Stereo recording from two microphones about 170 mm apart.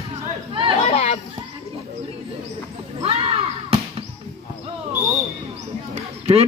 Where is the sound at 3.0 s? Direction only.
35° right (ahead or behind).